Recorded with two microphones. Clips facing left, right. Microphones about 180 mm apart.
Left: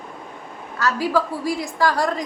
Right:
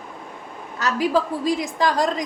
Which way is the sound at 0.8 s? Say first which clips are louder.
Even; 20° right (ahead or behind).